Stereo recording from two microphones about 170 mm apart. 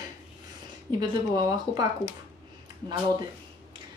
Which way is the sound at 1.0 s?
25° right (ahead or behind).